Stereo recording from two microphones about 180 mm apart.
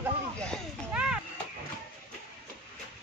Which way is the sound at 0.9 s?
5° right (ahead or behind).